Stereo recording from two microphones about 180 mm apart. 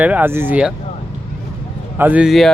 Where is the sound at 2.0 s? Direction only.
5° right (ahead or behind).